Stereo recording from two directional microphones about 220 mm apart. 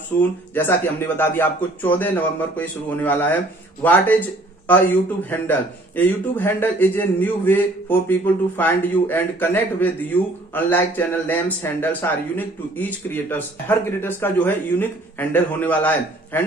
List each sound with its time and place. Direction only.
0.2 s a man's voice: 10° left (ahead or behind)
5.3 s a man's voice: 10° left (ahead or behind)